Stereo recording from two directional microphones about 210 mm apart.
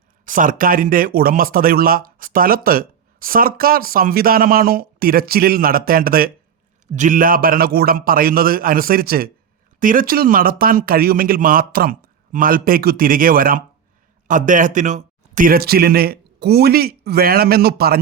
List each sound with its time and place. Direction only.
0.3 s speech: 40° right (ahead or behind)